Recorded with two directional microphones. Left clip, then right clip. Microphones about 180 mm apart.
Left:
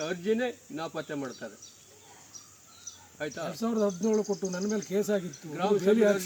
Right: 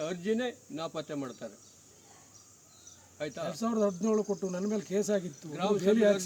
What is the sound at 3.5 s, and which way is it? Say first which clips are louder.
Speech: left 1 dB; 10° right (ahead or behind).